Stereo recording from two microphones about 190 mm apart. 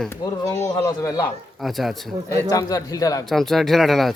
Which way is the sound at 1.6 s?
Centre (ahead or behind).